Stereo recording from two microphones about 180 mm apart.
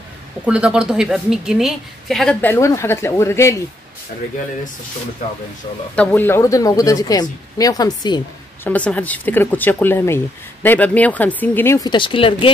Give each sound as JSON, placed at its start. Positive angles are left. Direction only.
{"t": 0.5, "sound": "a woman's voice", "side_deg": -5}
{"t": 5.9, "sound": "speech", "side_deg": 10}
{"t": 8.6, "sound": "speech", "side_deg": 10}